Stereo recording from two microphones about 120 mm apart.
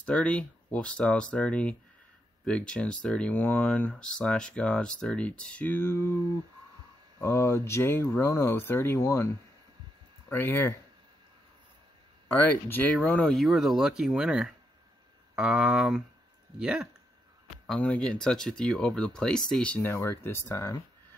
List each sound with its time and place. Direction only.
0.0 s speech: 10° left (ahead or behind)
7.2 s speech: 20° left (ahead or behind)
10.3 s speech: 15° left (ahead or behind)
12.3 s speech: 15° left (ahead or behind); by 16.9 s 5° right (ahead or behind)
17.7 s speech: 10° left (ahead or behind)